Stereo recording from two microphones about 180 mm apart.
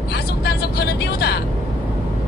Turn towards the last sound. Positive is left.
turn(degrees=65)  # may be behind; listen again after turning